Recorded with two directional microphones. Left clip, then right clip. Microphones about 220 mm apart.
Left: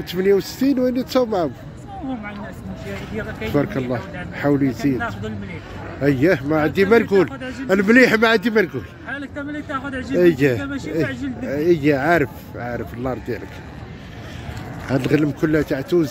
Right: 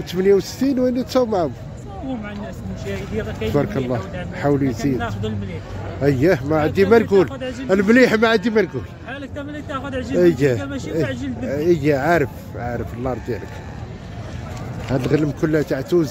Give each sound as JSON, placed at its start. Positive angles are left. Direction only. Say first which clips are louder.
{"t": 0.1, "sound": "speech", "louder": "right 1 dB", "side_deg": 5}
{"t": 3.5, "sound": "speech", "louder": "even", "side_deg": 5}
{"t": 9.1, "sound": "speech", "louder": "left 2 dB", "side_deg": -5}
{"t": 10.2, "sound": "speech", "louder": "left 1 dB", "side_deg": 10}
{"t": 10.7, "sound": "speech", "louder": "even", "side_deg": 0}
{"t": 14.9, "sound": "speech", "louder": "left 1 dB", "side_deg": 15}